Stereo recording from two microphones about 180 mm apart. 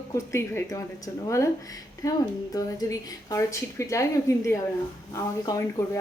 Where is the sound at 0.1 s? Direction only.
15° left (ahead or behind).